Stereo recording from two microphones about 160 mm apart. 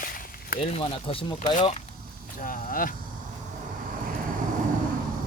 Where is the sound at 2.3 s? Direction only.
60° left (ahead or behind).